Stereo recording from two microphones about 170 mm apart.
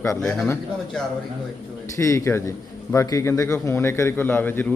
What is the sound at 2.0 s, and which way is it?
A man's voice, 15° left (ahead or behind).